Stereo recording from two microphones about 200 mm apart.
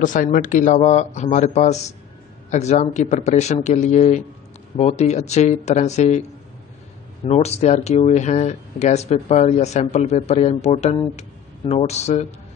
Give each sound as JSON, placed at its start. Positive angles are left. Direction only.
{"t": 0.0, "sound": "speech", "side_deg": 40}
{"t": 7.2, "sound": "speech", "side_deg": 30}